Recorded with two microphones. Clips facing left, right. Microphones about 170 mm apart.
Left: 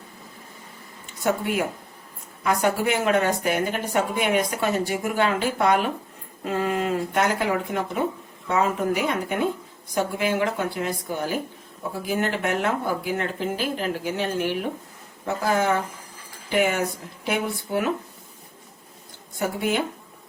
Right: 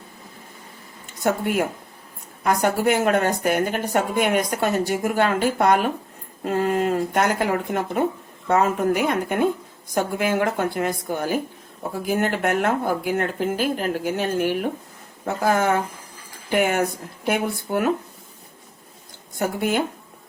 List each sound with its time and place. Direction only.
1.2 s a woman's voice: 50° right (ahead or behind)
19.4 s a woman's voice: 45° right (ahead or behind)